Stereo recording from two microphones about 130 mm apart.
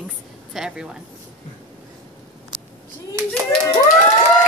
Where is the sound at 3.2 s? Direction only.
20° right (ahead or behind).